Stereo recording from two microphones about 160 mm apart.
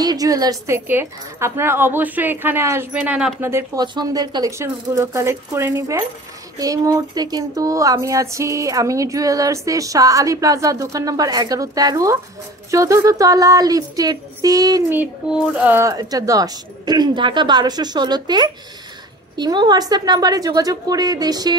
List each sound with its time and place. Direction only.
0.0 s a woman's voice: 25° right (ahead or behind)
3.8 s speech: 25° right (ahead or behind)
15.0 s a woman's voice: 5° right (ahead or behind)
15.9 s speech: 25° right (ahead or behind)